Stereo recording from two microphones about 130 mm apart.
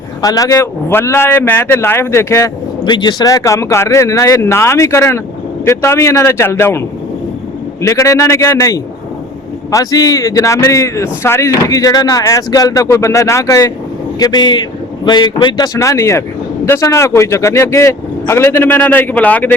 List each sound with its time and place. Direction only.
0.2 s speech: 25° left (ahead or behind)
2.8 s speech: 35° left (ahead or behind); by 19.5 s 15° left (ahead or behind)